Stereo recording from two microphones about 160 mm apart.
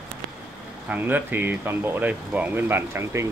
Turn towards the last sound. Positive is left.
turn(degrees=-15)  # may be behind; listen again after turning